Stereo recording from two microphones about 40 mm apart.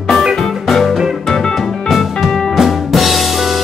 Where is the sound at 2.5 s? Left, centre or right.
Centre.